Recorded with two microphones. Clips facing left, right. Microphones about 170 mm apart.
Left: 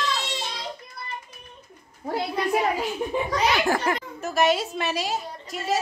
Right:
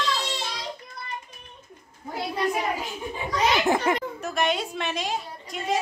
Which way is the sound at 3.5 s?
20° right (ahead or behind).